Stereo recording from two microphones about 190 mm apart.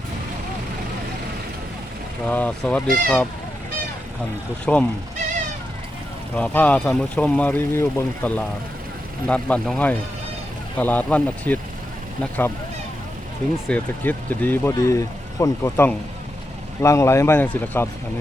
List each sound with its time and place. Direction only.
2.2 s speech: 5° left (ahead or behind)
2.8 s speech: 50° right (ahead or behind)
4.6 s speech: 5° left (ahead or behind)
6.3 s speech: 5° left (ahead or behind)
13.7 s speech: 10° left (ahead or behind)